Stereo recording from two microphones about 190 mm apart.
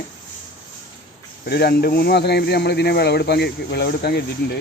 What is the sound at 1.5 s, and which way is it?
Speech, 55° left (ahead or behind).